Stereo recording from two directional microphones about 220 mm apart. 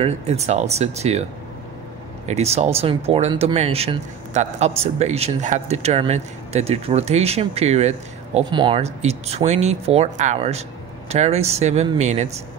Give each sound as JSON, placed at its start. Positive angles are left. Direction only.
{"t": 0.0, "sound": "speech", "side_deg": -30}
{"t": 2.2, "sound": "speech", "side_deg": -30}